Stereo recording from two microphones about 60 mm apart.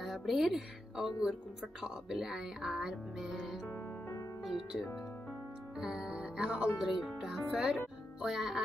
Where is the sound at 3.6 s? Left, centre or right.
Left.